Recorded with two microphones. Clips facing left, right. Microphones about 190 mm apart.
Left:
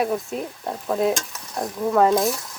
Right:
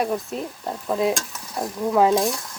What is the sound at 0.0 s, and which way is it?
Speech, centre (ahead or behind).